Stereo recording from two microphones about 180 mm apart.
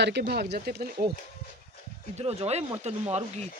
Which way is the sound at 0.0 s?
70° right (ahead or behind).